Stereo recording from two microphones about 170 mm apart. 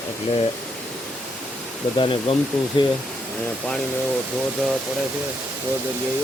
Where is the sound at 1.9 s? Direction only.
30° left (ahead or behind).